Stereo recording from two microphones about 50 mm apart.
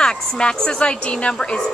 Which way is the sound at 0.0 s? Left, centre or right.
Centre.